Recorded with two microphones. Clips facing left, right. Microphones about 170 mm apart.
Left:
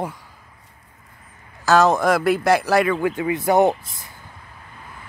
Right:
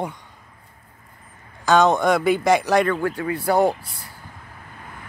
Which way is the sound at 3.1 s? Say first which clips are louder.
Left 2 dB; 20° left (ahead or behind).